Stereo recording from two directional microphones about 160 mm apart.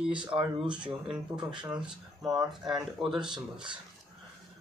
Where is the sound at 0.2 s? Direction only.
30° right (ahead or behind).